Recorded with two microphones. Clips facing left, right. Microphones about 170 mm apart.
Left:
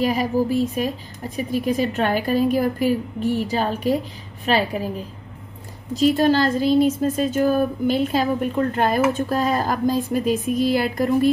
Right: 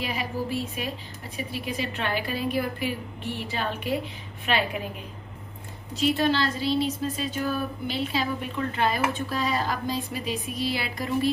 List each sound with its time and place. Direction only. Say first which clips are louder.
0.0 s a woman's voice: left 10 dB; 40° left (ahead or behind)